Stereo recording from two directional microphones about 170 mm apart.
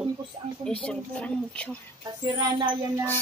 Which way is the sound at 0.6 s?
5° left (ahead or behind).